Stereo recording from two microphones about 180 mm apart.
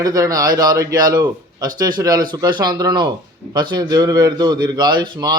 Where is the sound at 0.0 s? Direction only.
20° right (ahead or behind).